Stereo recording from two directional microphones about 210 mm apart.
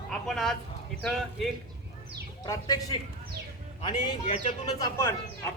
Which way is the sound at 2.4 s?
15° left (ahead or behind).